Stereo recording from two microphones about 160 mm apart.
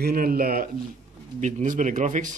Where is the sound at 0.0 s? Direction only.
65° right (ahead or behind).